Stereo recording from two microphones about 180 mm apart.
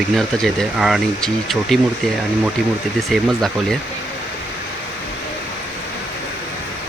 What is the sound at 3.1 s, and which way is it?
Speech, 5° left (ahead or behind).